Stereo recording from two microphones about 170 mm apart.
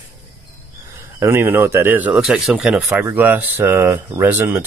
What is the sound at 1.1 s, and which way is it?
Speech, 15° right (ahead or behind).